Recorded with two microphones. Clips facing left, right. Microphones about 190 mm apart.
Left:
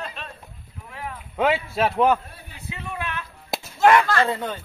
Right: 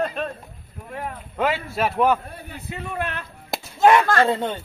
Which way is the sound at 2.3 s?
55° right (ahead or behind).